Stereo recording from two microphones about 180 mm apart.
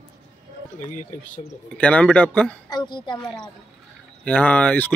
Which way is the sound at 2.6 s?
25° left (ahead or behind).